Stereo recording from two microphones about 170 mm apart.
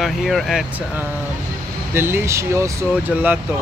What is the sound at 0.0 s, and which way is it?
Speech, centre (ahead or behind).